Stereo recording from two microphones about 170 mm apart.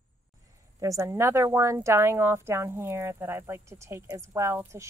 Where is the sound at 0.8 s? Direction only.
20° right (ahead or behind).